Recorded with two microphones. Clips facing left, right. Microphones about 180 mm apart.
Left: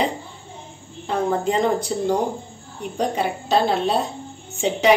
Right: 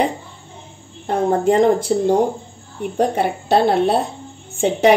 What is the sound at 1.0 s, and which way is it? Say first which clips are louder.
Speech: right 5 dB; 55° right (ahead or behind).